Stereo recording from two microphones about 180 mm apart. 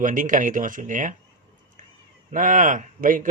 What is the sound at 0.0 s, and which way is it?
Speech, 45° right (ahead or behind).